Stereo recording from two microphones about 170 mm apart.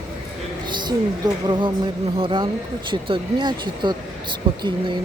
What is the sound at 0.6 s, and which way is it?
A woman's voice, 25° right (ahead or behind).